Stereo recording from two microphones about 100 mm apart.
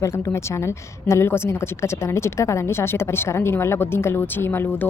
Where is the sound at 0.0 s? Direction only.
30° left (ahead or behind).